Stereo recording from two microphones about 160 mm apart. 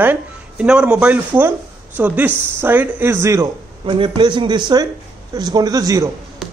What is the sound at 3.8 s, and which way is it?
Speech, 30° right (ahead or behind).